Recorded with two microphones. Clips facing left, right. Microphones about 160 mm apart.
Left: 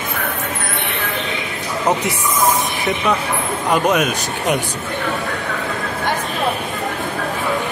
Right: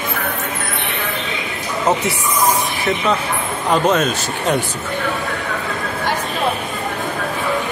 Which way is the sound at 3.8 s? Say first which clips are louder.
Right 1 dB; 10° left (ahead or behind).